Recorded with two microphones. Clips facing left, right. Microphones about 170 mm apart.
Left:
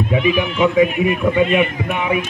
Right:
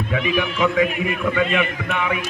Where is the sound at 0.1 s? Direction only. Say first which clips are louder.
Left 3 dB; 25° left (ahead or behind).